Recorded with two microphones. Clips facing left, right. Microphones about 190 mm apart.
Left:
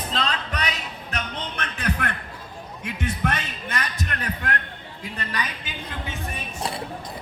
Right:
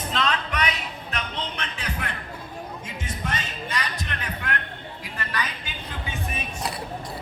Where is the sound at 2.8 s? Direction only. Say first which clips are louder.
Left 10 dB; 60° left (ahead or behind); by 4.5 s 45° left (ahead or behind).